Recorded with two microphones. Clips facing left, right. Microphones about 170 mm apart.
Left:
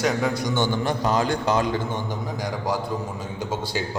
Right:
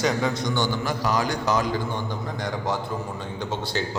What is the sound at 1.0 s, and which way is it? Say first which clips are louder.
Speech: left 1 dB; 25° left (ahead or behind).